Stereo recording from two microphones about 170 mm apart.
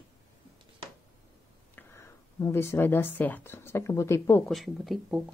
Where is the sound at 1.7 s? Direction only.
15° left (ahead or behind).